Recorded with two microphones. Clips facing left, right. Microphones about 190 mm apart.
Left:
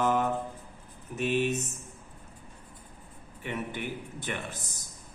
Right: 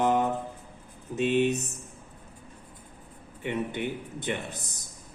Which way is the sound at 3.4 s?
20° right (ahead or behind).